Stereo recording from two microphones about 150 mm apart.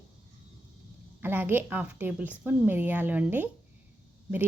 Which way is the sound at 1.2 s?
15° right (ahead or behind).